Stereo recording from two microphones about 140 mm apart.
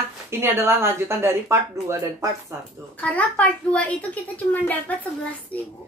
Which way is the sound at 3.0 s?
10° left (ahead or behind).